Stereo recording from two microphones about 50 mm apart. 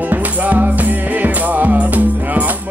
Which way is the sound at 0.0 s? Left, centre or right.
Right.